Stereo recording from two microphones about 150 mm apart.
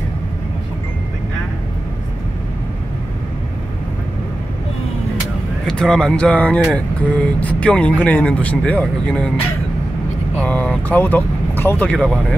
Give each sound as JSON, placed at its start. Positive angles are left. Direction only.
{"t": 5.7, "sound": "speech", "side_deg": 5}
{"t": 10.4, "sound": "speech", "side_deg": 10}